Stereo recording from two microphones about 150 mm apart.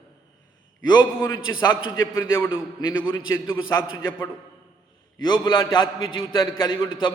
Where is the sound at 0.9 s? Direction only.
25° left (ahead or behind).